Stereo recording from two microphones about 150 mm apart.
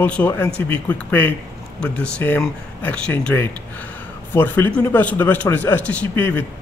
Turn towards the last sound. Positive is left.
turn(degrees=15)  # may be behind; listen again after turning